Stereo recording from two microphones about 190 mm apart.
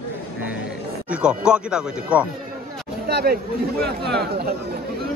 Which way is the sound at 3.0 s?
60° right (ahead or behind).